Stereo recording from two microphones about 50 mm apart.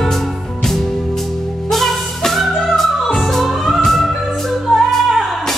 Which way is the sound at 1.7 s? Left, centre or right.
Centre.